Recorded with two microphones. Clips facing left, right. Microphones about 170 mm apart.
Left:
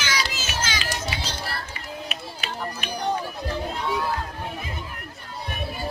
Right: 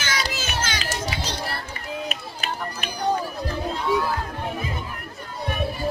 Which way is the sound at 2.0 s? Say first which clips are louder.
Right 3 dB; 45° right (ahead or behind).